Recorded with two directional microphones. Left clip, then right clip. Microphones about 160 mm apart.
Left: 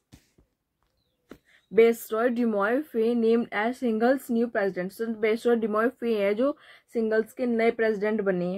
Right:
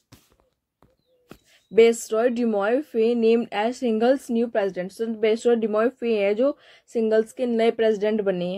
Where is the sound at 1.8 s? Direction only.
30° right (ahead or behind).